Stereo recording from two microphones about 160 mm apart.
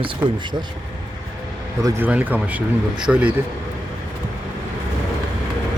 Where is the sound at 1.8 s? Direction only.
15° right (ahead or behind).